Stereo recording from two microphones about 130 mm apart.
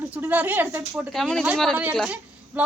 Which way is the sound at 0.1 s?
15° right (ahead or behind).